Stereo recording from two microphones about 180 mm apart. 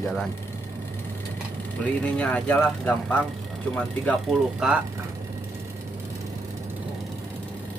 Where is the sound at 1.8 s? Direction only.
5° left (ahead or behind); by 5.0 s 10° right (ahead or behind).